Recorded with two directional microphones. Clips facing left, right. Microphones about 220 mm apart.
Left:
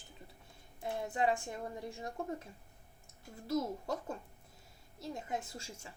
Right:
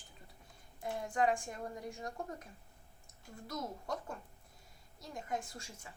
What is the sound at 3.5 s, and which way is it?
A woman's voice, 25° left (ahead or behind).